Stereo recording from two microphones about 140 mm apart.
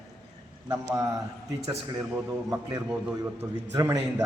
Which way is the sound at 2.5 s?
20° right (ahead or behind).